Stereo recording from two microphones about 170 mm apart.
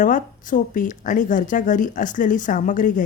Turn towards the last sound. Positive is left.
turn(degrees=50)  # may be behind; listen again after turning